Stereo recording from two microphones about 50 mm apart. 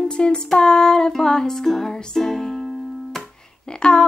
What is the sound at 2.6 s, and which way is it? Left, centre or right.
Music, centre.